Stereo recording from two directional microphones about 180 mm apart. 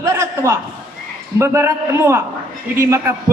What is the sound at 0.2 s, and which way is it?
A man's voice, 15° right (ahead or behind).